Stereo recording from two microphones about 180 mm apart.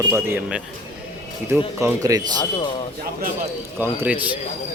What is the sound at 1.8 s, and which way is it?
Speech, 15° right (ahead or behind).